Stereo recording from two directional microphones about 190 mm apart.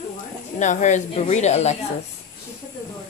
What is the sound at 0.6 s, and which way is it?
A woman's voice, 40° left (ahead or behind).